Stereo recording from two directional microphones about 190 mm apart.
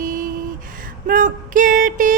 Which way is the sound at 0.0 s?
45° right (ahead or behind).